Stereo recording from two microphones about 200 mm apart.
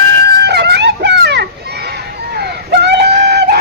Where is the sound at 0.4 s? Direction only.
55° right (ahead or behind).